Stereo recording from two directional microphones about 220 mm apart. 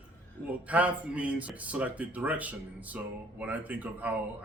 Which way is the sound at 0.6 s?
5° right (ahead or behind).